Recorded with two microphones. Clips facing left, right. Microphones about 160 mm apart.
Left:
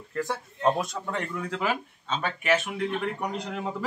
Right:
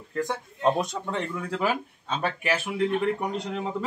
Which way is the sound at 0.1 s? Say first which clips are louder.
Right 1 dB; 15° right (ahead or behind).